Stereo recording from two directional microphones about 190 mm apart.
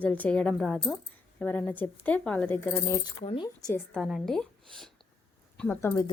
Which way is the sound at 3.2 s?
30° left (ahead or behind).